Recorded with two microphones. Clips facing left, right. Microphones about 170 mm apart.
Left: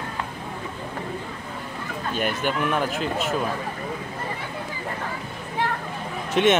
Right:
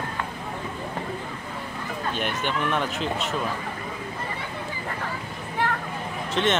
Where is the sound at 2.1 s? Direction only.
5° left (ahead or behind).